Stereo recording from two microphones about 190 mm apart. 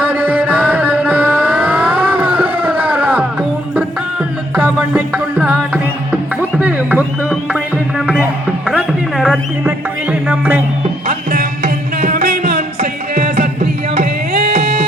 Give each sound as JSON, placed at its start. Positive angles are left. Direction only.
{"t": 0.0, "sound": "music", "side_deg": -10}
{"t": 4.5, "sound": "music", "side_deg": -10}
{"t": 11.0, "sound": "music", "side_deg": -50}
{"t": 14.5, "sound": "music", "side_deg": -30}